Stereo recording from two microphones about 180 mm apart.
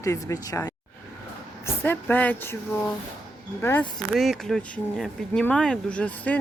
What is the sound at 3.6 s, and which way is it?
Speech, 10° left (ahead or behind).